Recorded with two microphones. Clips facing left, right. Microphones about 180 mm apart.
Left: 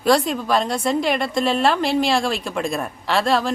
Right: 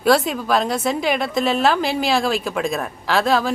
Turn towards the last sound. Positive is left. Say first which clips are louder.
# right 1 dB
turn(degrees=0)  # may be behind; listen again after turning